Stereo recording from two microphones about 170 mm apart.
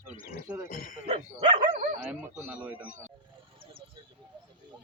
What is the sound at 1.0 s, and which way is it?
Dog, 40° right (ahead or behind).